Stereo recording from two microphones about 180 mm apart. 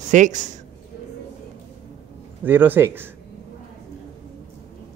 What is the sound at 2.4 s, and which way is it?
Speech, 10° right (ahead or behind).